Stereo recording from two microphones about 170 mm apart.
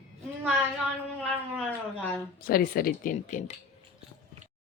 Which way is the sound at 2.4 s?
60° left (ahead or behind).